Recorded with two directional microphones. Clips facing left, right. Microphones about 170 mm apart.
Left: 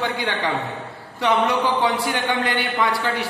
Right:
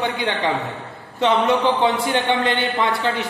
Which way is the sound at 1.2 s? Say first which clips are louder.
Right 2 dB; 20° right (ahead or behind).